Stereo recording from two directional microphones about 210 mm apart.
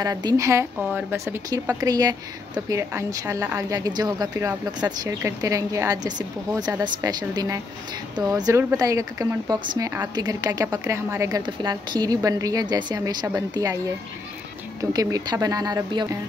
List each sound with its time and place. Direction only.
0.0 s a woman's voice: 15° right (ahead or behind)
14.8 s a woman's voice: 15° right (ahead or behind)